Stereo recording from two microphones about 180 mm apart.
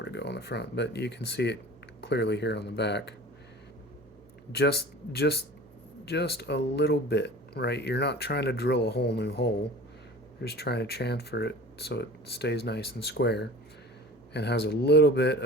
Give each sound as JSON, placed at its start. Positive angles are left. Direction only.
{"t": 0.0, "sound": "speech", "side_deg": 70}
{"t": 4.5, "sound": "speech", "side_deg": 65}